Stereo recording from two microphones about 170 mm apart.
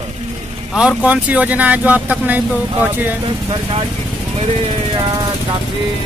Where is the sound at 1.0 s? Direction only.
10° right (ahead or behind).